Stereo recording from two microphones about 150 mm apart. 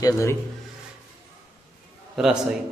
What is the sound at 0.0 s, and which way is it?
Speech, 20° left (ahead or behind).